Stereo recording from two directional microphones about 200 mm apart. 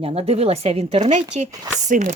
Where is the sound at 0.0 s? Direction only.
30° right (ahead or behind).